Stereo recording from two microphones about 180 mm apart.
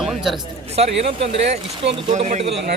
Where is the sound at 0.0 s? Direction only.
Centre (ahead or behind).